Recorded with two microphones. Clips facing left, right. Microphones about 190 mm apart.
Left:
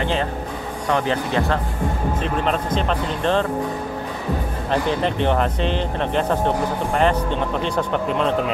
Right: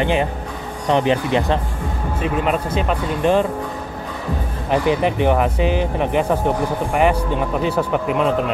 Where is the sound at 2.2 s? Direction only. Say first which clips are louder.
Right 4 dB; 5° right (ahead or behind).